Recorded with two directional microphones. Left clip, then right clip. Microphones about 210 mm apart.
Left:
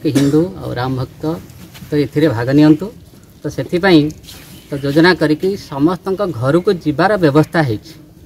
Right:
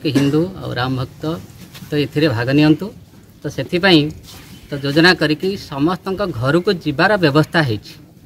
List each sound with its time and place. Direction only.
0.0 s speech: centre (ahead or behind)